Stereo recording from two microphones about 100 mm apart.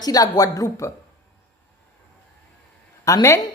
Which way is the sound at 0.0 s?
40° left (ahead or behind).